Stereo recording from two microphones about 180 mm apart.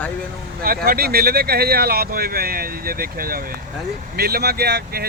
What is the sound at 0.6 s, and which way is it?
Speech, 55° right (ahead or behind).